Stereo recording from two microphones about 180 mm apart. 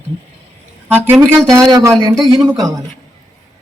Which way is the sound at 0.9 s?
10° right (ahead or behind).